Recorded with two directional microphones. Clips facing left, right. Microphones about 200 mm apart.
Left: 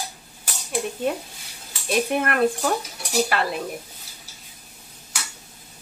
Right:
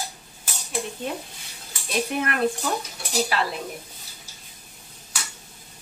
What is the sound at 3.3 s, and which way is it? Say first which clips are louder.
Speech: left 1 dB; 55° left (ahead or behind).